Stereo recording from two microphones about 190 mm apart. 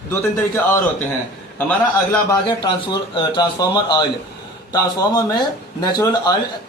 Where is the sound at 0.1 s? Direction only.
10° left (ahead or behind).